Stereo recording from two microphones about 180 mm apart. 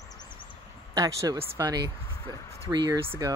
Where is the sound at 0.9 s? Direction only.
20° right (ahead or behind).